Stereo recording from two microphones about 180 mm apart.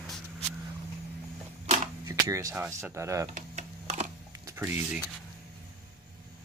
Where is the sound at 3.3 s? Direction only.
40° right (ahead or behind).